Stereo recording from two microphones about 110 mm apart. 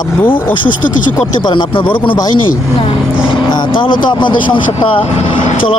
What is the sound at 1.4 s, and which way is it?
Speech, 45° left (ahead or behind).